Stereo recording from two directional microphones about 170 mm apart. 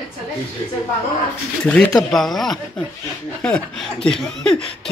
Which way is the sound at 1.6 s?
5° left (ahead or behind).